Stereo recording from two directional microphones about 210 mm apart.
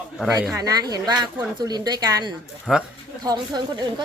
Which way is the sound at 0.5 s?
15° right (ahead or behind).